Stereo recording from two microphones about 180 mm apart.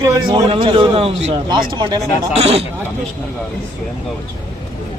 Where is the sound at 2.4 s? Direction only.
35° right (ahead or behind).